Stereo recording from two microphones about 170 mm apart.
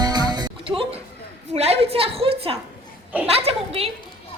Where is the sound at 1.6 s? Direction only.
35° right (ahead or behind).